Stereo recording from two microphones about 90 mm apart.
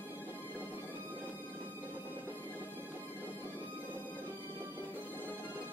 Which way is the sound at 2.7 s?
20° left (ahead or behind).